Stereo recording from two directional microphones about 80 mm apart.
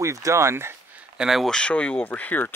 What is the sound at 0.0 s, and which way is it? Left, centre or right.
Speech, right.